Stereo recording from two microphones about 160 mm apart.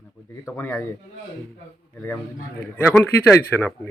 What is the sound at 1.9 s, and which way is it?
A man's voice, 15° left (ahead or behind).